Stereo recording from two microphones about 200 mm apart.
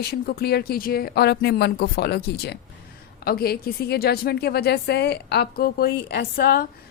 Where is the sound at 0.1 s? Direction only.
50° left (ahead or behind).